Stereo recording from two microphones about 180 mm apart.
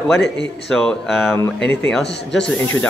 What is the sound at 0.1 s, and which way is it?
Speech, 5° left (ahead or behind).